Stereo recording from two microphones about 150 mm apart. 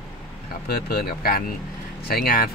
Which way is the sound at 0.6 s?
90° left.